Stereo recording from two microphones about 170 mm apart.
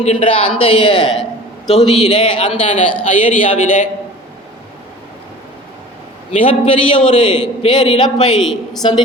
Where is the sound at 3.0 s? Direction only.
50° left (ahead or behind).